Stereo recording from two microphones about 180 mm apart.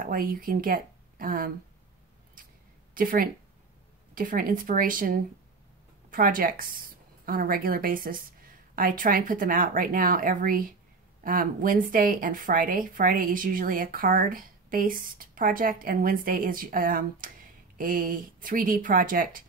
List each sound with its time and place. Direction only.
0.0 s speech: 50° right (ahead or behind)
2.9 s speech: 50° right (ahead or behind)